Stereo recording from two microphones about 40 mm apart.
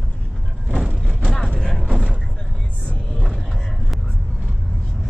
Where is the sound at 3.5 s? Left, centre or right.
Centre.